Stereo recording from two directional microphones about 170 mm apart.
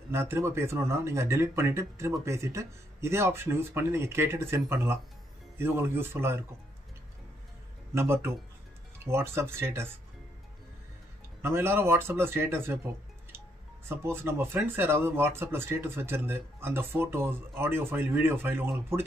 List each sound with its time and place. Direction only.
0.1 s speech: 15° right (ahead or behind)
7.9 s speech: 15° right (ahead or behind)
11.4 s speech: 15° right (ahead or behind)